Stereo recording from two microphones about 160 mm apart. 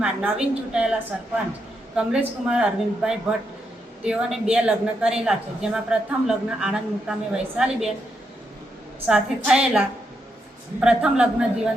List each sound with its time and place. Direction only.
0.0 s a woman's voice: 5° right (ahead or behind)
2.0 s a woman's voice: 5° right (ahead or behind)
9.0 s a woman's voice: 5° right (ahead or behind)